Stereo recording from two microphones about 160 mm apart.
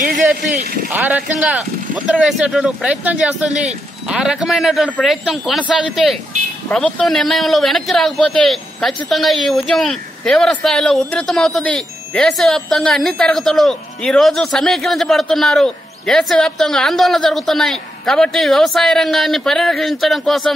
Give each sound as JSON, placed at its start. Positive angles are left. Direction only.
{"t": 0.0, "sound": "vehicle", "side_deg": -55}
{"t": 0.8, "sound": "a man's voice", "side_deg": -10}